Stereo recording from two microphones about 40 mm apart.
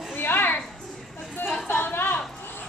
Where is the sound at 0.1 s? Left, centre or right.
Left.